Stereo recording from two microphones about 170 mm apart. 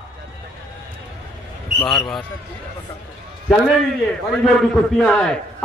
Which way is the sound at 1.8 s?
5° left (ahead or behind).